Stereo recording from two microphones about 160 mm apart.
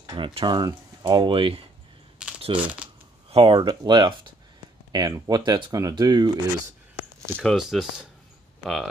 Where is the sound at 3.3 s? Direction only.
35° right (ahead or behind).